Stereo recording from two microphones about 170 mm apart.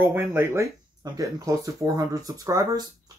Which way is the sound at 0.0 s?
15° right (ahead or behind).